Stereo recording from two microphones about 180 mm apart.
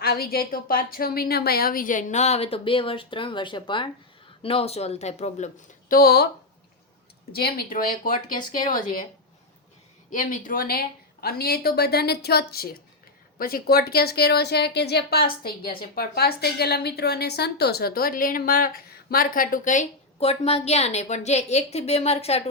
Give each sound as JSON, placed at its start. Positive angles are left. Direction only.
{"t": 0.0, "sound": "a woman's voice", "side_deg": 60}
{"t": 5.9, "sound": "a woman's voice", "side_deg": 60}
{"t": 7.3, "sound": "a woman's voice", "side_deg": 60}
{"t": 10.1, "sound": "a woman's voice", "side_deg": 45}